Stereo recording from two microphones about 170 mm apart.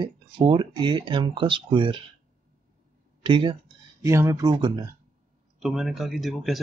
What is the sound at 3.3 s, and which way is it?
Speech, 30° right (ahead or behind).